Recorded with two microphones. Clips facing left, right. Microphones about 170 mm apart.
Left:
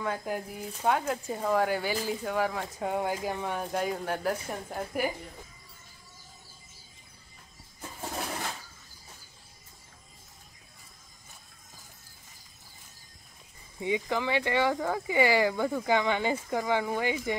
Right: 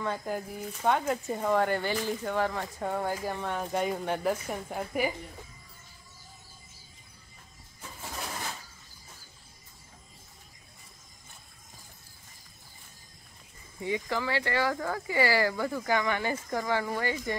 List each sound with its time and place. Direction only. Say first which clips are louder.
0.0 s speech: even; 5° left (ahead or behind)
13.7 s speech: left 2 dB; 15° left (ahead or behind)